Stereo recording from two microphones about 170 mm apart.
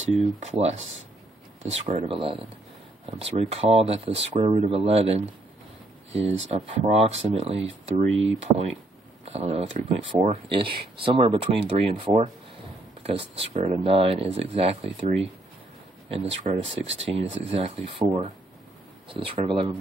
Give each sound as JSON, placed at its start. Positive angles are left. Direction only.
{"t": 0.2, "sound": "speech", "side_deg": -40}
{"t": 6.5, "sound": "speech", "side_deg": -35}
{"t": 9.2, "sound": "a sound", "side_deg": -35}
{"t": 9.8, "sound": "speech", "side_deg": -35}